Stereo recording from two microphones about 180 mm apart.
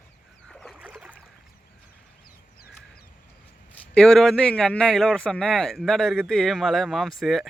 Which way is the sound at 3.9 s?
5° left (ahead or behind).